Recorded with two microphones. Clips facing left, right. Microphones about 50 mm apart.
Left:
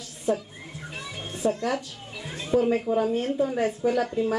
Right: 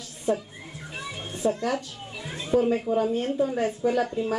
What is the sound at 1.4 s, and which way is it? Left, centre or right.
Speech, centre.